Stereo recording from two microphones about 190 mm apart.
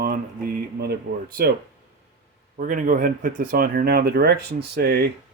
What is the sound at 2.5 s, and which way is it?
Speech, 45° right (ahead or behind).